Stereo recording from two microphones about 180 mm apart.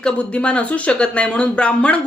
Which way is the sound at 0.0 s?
5° left (ahead or behind).